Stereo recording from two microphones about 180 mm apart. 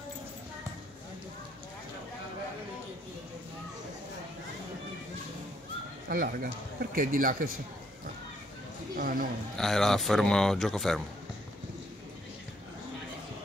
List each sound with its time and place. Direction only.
6.0 s speech: 55° right (ahead or behind)
8.9 s speech: 50° right (ahead or behind)
9.6 s speech: centre (ahead or behind)